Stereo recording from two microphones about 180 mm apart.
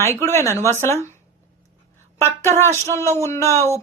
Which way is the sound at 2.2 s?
15° left (ahead or behind).